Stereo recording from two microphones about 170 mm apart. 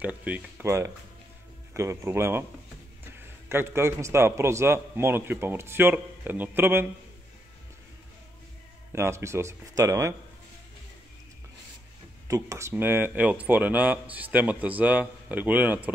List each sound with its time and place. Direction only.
0.0 s speech: 10° right (ahead or behind)
3.4 s speech: 15° right (ahead or behind)
8.9 s speech: 15° right (ahead or behind)
12.3 s speech: 20° right (ahead or behind)